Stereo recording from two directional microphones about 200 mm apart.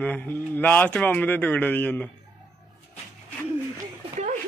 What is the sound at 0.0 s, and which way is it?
Speech, 10° left (ahead or behind).